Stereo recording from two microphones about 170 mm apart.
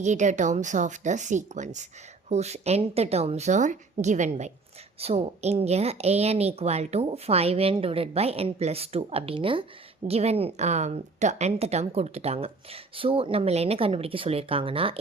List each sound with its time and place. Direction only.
0.0 s a woman's voice: 45° right (ahead or behind)